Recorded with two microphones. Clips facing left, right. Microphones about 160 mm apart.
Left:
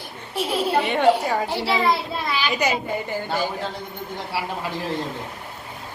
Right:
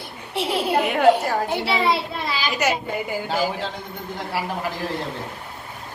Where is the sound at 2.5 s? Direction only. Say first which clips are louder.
Right 1 dB; 5° right (ahead or behind).